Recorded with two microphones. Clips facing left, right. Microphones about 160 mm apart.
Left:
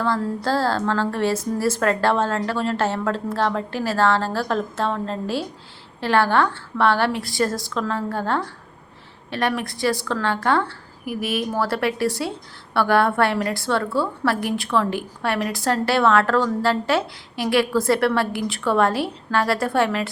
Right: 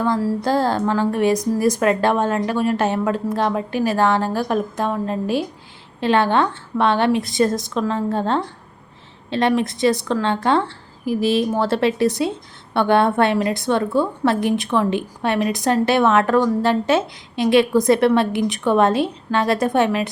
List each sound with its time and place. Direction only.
0.0 s a woman's voice: 10° right (ahead or behind)